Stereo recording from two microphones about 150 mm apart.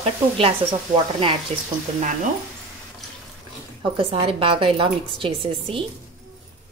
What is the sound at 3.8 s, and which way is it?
Speech, 40° right (ahead or behind).